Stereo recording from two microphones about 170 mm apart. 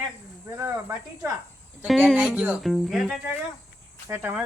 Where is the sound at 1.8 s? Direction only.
Centre (ahead or behind).